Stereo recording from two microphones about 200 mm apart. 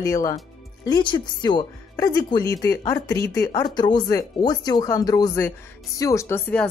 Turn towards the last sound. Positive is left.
turn(degrees=10)  # may be behind; listen again after turning